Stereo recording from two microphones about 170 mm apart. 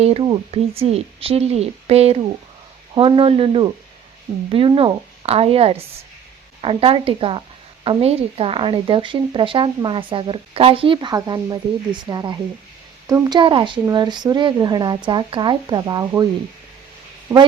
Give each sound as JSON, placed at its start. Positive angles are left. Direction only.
{"t": 0.0, "sound": "speech", "side_deg": -35}